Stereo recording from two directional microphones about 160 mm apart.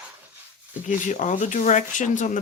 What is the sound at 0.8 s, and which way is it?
Speech, 50° left (ahead or behind).